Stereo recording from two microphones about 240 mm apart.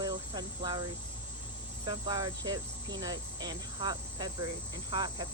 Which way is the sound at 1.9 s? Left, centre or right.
Centre.